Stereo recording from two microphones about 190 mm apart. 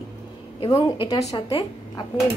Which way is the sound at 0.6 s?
20° left (ahead or behind).